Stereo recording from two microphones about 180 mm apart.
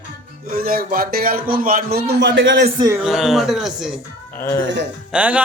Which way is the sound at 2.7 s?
20° right (ahead or behind).